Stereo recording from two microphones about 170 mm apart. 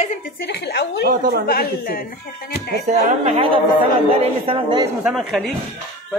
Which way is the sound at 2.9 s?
35° right (ahead or behind).